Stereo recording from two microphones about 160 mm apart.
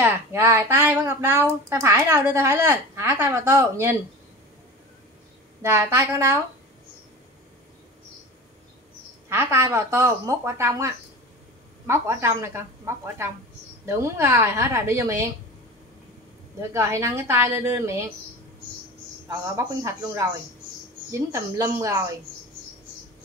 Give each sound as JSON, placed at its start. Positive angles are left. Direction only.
{"t": 0.0, "sound": "a woman's voice", "side_deg": -15}
{"t": 5.6, "sound": "a woman's voice", "side_deg": -15}
{"t": 9.3, "sound": "a woman's voice", "side_deg": -15}
{"t": 16.7, "sound": "a woman's voice", "side_deg": -15}
{"t": 19.2, "sound": "a man's voice", "side_deg": -20}